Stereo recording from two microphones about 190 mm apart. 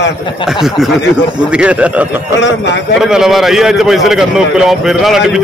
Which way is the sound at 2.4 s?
70° left (ahead or behind).